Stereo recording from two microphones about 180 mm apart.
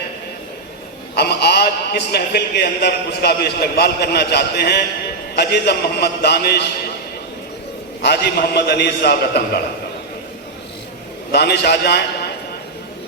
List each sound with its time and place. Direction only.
1.1 s a man's voice: 65° left (ahead or behind)
8.0 s a man's voice: 65° left (ahead or behind)
11.3 s a man's voice: 65° left (ahead or behind)